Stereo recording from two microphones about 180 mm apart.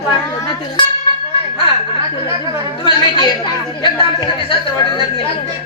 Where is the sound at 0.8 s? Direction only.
25° left (ahead or behind).